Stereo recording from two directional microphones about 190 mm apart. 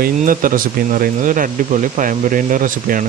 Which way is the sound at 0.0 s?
45° right (ahead or behind).